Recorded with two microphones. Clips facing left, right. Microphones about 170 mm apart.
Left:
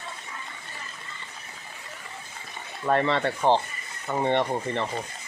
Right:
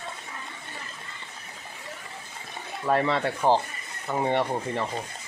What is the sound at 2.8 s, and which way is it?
Speech, 5° right (ahead or behind).